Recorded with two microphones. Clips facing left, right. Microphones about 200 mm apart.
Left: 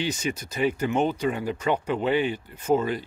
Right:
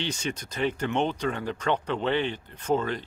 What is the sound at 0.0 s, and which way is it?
Speech, 10° left (ahead or behind).